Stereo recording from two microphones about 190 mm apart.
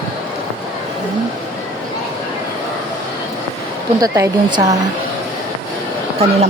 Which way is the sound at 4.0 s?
15° right (ahead or behind).